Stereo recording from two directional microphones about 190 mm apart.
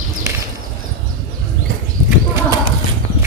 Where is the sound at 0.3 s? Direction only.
15° right (ahead or behind).